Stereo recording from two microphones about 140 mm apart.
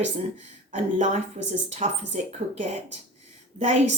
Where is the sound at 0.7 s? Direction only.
60° right (ahead or behind).